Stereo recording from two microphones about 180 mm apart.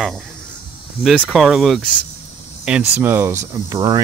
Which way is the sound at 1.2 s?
Centre (ahead or behind).